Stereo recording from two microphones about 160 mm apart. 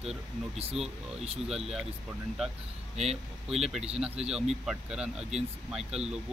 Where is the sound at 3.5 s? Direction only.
Centre (ahead or behind).